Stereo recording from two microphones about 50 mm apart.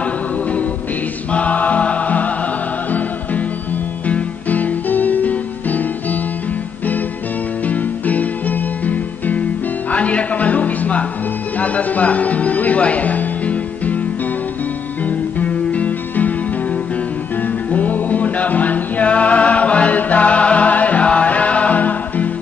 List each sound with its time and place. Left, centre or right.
0.0 s music: left
1.3 s choir: left
4.1 s music: left
7.6 s music: left
15.0 s music: left
17.4 s music: left